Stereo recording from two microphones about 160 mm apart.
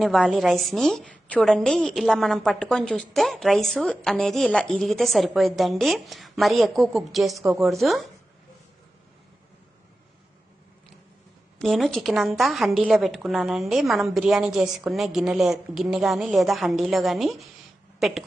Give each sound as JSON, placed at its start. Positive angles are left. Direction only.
{"t": 0.0, "sound": "a woman's voice", "side_deg": 0}
{"t": 11.6, "sound": "a woman's voice", "side_deg": 0}